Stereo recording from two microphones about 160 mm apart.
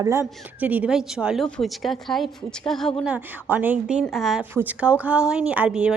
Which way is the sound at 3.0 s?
10° right (ahead or behind).